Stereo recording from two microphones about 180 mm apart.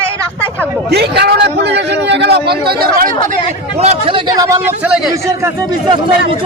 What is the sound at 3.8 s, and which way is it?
Speech, 30° right (ahead or behind).